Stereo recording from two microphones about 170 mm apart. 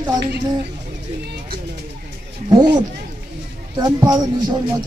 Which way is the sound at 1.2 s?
70° right (ahead or behind).